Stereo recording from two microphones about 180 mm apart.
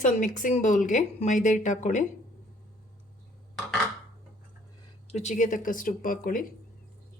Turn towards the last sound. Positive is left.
turn(degrees=50)  # may be behind; listen again after turning